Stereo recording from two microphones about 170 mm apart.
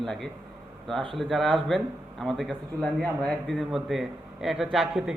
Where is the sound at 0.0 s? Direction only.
Centre (ahead or behind).